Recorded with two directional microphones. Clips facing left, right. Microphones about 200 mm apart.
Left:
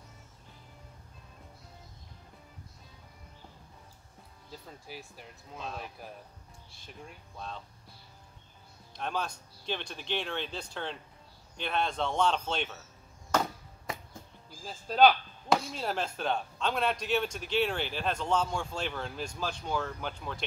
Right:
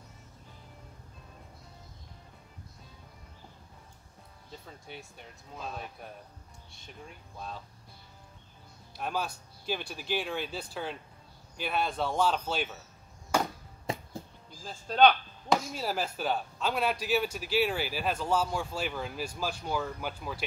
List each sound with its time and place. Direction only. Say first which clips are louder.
4.5 s speech: even; centre (ahead or behind)
8.9 s speech: right 1 dB; 5° right (ahead or behind)
13.3 s chop: even; 10° right (ahead or behind)
13.9 s music: right 5 dB; 30° right (ahead or behind)
14.6 s speech: even; centre (ahead or behind)